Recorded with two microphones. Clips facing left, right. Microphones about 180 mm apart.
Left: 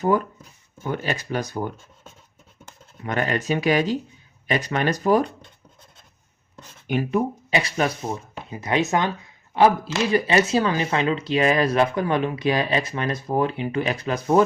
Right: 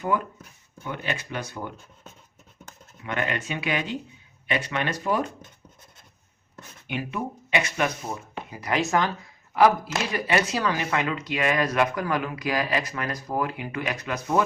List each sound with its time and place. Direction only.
0.9 s speech: 40° left (ahead or behind)
3.0 s speech: 40° left (ahead or behind)
6.8 s speech: 40° left (ahead or behind)